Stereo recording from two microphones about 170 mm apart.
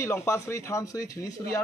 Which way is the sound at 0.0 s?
15° left (ahead or behind).